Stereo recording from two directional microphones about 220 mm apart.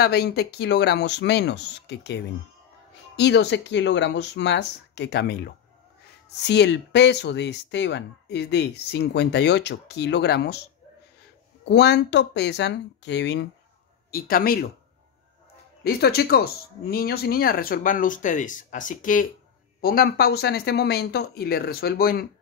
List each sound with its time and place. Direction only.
0.0 s speech: 45° left (ahead or behind)
6.4 s speech: 50° left (ahead or behind)
11.6 s speech: 50° left (ahead or behind)
14.1 s speech: 40° left (ahead or behind)
15.8 s speech: 45° left (ahead or behind)